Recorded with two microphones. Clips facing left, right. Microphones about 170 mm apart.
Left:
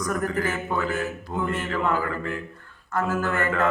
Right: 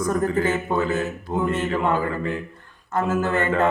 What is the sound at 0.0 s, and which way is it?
Speech, 25° right (ahead or behind).